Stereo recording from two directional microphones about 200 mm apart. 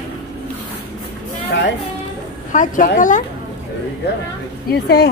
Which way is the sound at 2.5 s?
40° left (ahead or behind).